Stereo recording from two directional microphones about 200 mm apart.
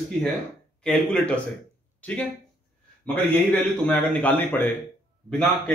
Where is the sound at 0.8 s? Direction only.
5° left (ahead or behind).